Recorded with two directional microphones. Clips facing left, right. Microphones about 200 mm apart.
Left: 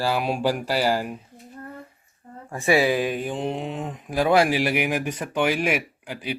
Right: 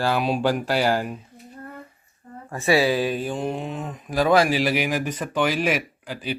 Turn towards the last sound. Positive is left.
turn(degrees=15)  # may be behind; listen again after turning